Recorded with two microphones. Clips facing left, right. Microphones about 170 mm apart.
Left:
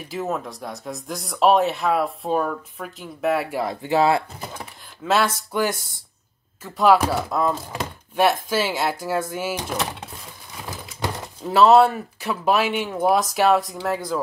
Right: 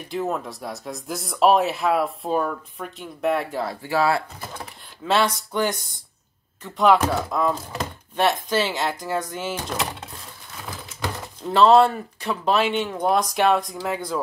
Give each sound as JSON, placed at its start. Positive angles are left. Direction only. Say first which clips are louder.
{"t": 0.1, "sound": "speech", "louder": "right 1 dB", "side_deg": 0}
{"t": 5.0, "sound": "speech", "louder": "even", "side_deg": 5}
{"t": 11.4, "sound": "speech", "louder": "left 1 dB", "side_deg": 5}